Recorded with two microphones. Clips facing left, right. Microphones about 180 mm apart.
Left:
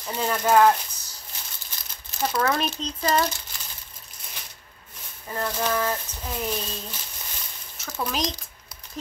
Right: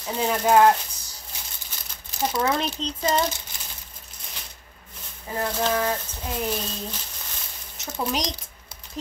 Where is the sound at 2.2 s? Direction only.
20° right (ahead or behind).